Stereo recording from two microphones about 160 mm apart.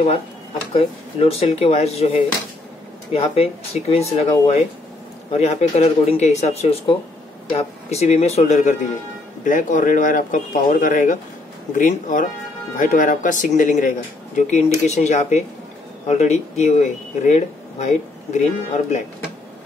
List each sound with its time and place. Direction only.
0.7 s speech: 40° left (ahead or behind)
9.4 s speech: 55° left (ahead or behind)